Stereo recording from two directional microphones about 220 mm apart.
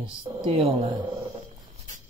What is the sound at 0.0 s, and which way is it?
Speech, 20° right (ahead or behind).